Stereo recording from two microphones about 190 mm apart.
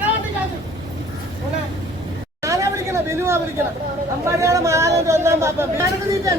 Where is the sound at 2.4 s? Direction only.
15° right (ahead or behind).